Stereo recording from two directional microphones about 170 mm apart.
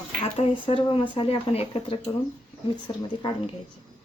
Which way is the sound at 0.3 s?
30° left (ahead or behind).